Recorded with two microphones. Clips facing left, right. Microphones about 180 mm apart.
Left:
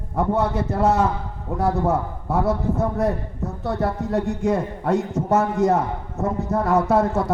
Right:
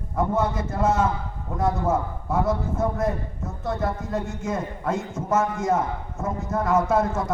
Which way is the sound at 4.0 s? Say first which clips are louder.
Left 6 dB; 65° left (ahead or behind).